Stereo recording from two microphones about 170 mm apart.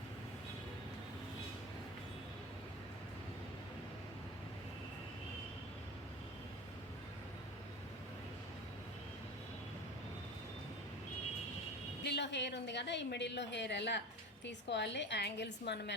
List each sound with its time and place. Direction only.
12.0 s a woman's voice: 90° left